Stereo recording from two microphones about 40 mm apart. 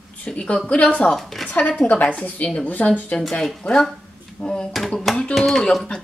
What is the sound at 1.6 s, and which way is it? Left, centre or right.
Speech, left.